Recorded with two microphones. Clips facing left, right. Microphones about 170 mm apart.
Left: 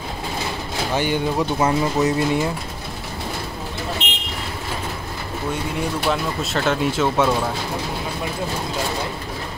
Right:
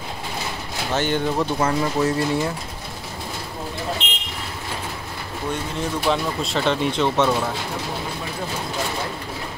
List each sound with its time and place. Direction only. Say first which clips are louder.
0.9 s speech: even; 10° left (ahead or behind)
6.0 s speech: even; centre (ahead or behind)